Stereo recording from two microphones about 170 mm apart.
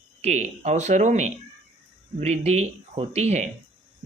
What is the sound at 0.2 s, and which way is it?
Speech, 40° right (ahead or behind).